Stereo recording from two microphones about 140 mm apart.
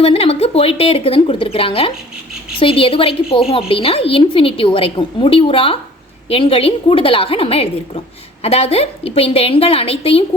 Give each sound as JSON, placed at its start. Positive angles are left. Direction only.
{"t": 0.0, "sound": "a woman's voice", "side_deg": 45}